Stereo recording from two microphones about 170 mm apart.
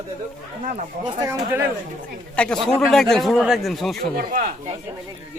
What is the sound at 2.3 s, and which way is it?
Speech, 5° left (ahead or behind).